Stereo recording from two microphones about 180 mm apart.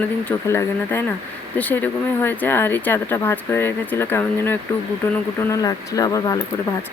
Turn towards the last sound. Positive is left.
turn(degrees=20)  # may be behind; listen again after turning